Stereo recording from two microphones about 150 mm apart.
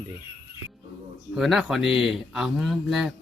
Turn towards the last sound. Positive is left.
turn(degrees=0)  # may be behind; listen again after turning